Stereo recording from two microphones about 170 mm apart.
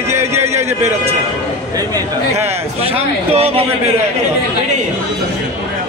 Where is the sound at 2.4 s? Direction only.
35° right (ahead or behind).